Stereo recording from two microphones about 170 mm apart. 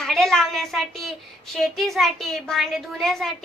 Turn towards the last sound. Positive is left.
turn(degrees=0)  # may be behind; listen again after turning